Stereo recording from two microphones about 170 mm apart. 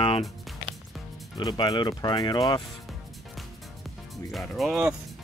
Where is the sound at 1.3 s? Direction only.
25° left (ahead or behind).